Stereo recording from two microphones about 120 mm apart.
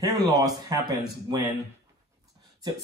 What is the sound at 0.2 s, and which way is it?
Speech, 30° right (ahead or behind).